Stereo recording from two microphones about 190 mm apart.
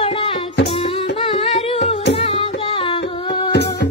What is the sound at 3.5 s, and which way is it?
Music, 65° left (ahead or behind).